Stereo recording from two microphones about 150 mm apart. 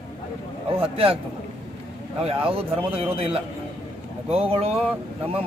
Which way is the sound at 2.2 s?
40° right (ahead or behind).